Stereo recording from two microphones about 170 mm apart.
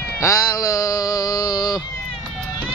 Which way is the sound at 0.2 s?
20° left (ahead or behind).